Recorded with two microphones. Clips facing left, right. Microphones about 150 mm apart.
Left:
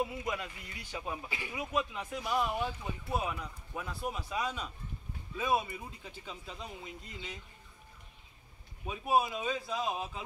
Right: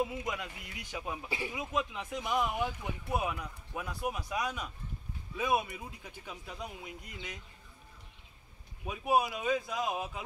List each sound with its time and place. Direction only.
0.0 s speech: 15° right (ahead or behind)
8.8 s speech: 10° right (ahead or behind)